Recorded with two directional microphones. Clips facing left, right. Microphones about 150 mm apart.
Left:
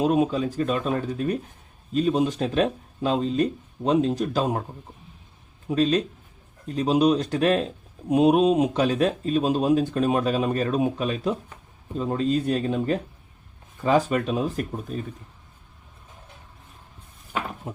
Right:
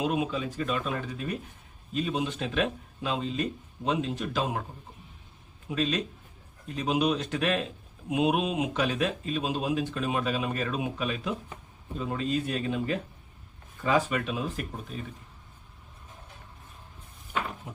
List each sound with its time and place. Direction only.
0.0 s speech: 40° left (ahead or behind)
5.6 s speech: 35° left (ahead or behind)